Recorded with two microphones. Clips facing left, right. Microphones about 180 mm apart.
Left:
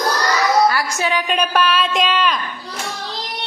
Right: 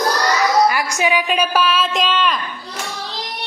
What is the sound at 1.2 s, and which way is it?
Speech, 5° right (ahead or behind).